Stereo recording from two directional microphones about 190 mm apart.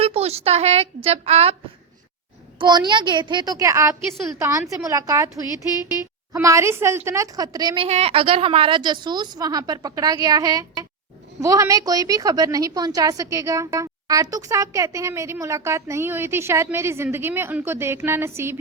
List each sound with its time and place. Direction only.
0.0 s a woman's voice: 30° right (ahead or behind)
2.6 s a woman's voice: 20° right (ahead or behind)
6.3 s a woman's voice: 15° right (ahead or behind)
7.9 s a woman's voice: 35° right (ahead or behind); by 18.5 s 15° right (ahead or behind)